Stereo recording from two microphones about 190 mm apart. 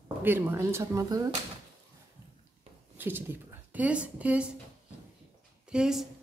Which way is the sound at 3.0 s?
10° right (ahead or behind).